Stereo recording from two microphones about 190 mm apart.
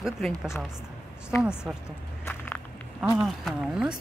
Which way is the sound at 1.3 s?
15° left (ahead or behind).